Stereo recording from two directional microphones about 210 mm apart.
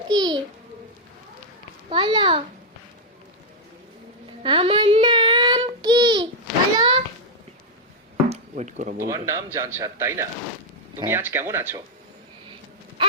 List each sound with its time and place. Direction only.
0.1 s babbling: 20° right (ahead or behind)
1.9 s a child's voice: 20° right (ahead or behind)
4.4 s child singing: 25° right (ahead or behind)
6.7 s a sound: 25° right (ahead or behind)
8.3 s a sound: 35° right (ahead or behind)
9.0 s speech: 15° right (ahead or behind)